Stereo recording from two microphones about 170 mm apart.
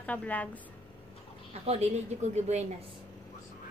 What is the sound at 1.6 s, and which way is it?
Speech, 40° right (ahead or behind).